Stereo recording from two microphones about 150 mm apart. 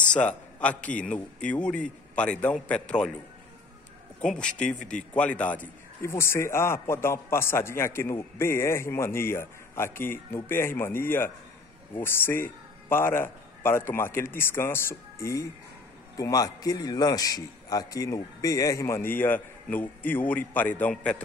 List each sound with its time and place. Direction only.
0.0 s a man's voice: 10° left (ahead or behind)
5.1 s a man's voice: 10° left (ahead or behind)